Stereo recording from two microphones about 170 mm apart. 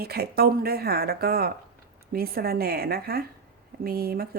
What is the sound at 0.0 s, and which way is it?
A woman's voice, 70° right (ahead or behind).